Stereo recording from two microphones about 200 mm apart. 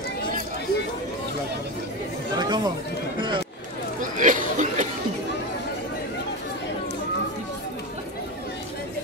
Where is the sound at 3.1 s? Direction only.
25° right (ahead or behind).